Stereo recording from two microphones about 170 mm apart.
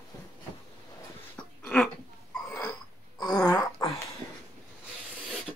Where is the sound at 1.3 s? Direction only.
5° left (ahead or behind).